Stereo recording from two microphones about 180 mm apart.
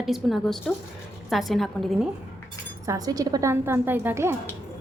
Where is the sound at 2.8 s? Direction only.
20° right (ahead or behind).